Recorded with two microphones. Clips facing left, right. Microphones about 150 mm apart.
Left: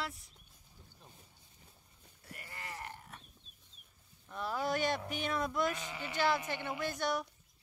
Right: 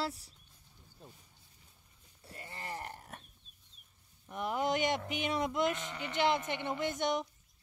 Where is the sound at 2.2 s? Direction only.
25° right (ahead or behind); by 3.2 s 40° right (ahead or behind).